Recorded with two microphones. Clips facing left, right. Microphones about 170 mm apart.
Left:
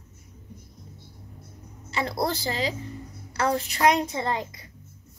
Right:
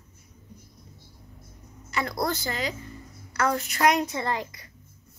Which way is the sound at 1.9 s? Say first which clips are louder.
Left 1 dB; 30° left (ahead or behind).